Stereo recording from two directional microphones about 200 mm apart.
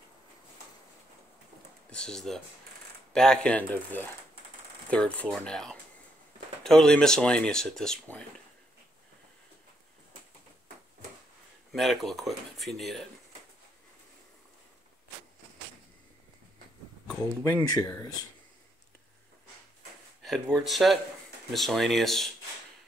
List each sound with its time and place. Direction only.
1.9 s speech: 5° left (ahead or behind)
11.7 s speech: centre (ahead or behind)
17.2 s speech: 10° left (ahead or behind)
20.2 s speech: centre (ahead or behind)